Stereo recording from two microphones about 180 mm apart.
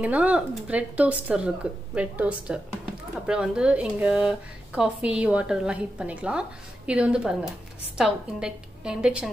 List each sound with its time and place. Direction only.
0.0 s a woman's voice: 10° right (ahead or behind)